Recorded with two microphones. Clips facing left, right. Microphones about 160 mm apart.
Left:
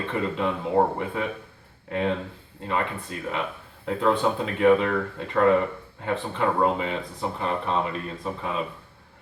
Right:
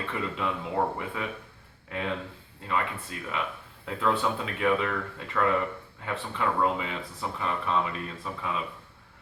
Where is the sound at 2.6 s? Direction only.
35° left (ahead or behind).